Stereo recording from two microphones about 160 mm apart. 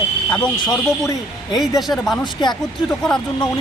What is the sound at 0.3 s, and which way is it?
Speech, 5° left (ahead or behind).